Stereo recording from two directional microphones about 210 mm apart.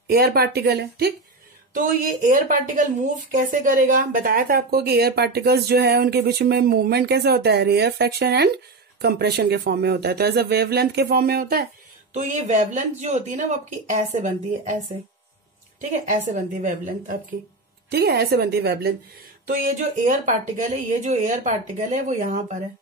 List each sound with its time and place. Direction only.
0.1 s speech: 45° right (ahead or behind)
1.7 s speech: 40° right (ahead or behind)
12.1 s speech: 35° right (ahead or behind)
15.8 s speech: 35° right (ahead or behind)
19.4 s speech: 40° right (ahead or behind)